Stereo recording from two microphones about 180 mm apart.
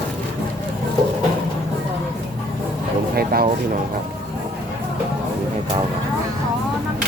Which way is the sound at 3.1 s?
60° right (ahead or behind).